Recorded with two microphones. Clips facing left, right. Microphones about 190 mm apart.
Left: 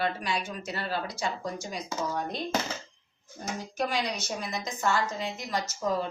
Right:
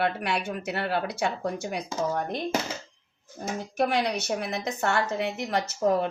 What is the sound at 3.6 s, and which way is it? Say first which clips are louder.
Speech: right 5 dB; 60° right (ahead or behind).